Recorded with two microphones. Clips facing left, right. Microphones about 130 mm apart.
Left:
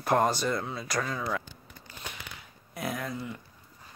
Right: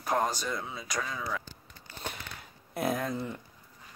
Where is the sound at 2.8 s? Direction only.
25° right (ahead or behind).